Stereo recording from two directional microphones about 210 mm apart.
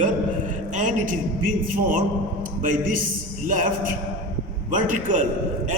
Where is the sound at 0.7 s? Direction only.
35° right (ahead or behind).